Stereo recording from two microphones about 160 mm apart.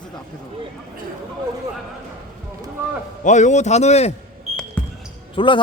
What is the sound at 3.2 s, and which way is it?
Speech, 50° left (ahead or behind).